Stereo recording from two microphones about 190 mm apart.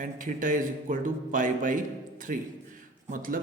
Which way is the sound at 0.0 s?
45° right (ahead or behind).